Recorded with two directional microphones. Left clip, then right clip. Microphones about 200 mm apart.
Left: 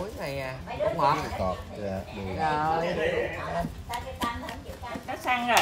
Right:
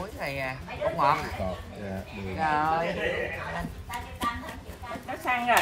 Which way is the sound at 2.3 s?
15° left (ahead or behind).